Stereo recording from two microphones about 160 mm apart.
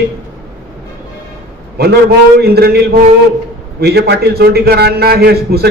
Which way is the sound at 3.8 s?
85° right.